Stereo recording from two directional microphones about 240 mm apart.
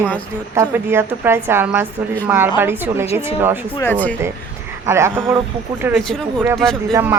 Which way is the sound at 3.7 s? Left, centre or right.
Centre.